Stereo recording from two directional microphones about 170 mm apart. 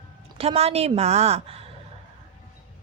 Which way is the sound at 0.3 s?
35° right (ahead or behind).